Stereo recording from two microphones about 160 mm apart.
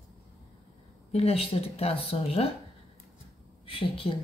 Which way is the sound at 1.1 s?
40° left (ahead or behind).